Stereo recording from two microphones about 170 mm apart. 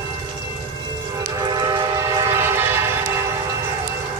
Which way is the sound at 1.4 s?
25° right (ahead or behind).